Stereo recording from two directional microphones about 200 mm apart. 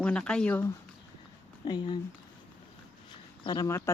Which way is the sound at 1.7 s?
20° left (ahead or behind).